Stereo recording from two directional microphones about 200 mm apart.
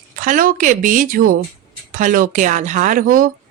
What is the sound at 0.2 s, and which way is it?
A woman's voice, 40° right (ahead or behind).